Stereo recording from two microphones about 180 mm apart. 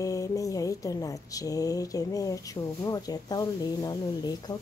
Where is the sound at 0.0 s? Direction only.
20° left (ahead or behind).